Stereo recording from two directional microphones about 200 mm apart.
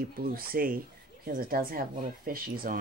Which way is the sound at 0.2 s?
45° right (ahead or behind).